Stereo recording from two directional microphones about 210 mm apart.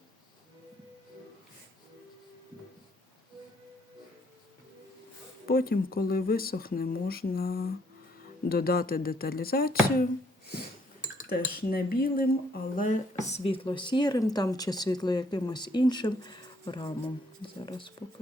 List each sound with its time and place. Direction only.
5.5 s speech: 45° left (ahead or behind)
11.3 s speech: 45° left (ahead or behind); by 17.9 s 25° left (ahead or behind)